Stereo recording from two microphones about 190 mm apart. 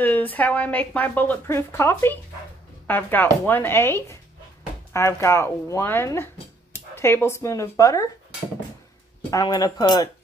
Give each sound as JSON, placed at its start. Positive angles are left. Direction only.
{"t": 0.0, "sound": "a woman's voice", "side_deg": 10}
{"t": 9.3, "sound": "speech", "side_deg": 20}